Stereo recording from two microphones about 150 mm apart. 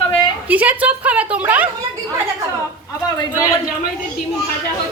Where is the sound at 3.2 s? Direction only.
20° left (ahead or behind).